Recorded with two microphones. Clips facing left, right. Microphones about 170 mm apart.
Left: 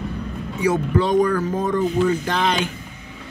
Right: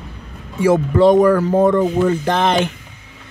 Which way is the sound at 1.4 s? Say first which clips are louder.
Right 7 dB; 60° right (ahead or behind).